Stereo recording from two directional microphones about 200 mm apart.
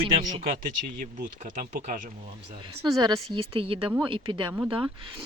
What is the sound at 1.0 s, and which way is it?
Speech, 40° right (ahead or behind).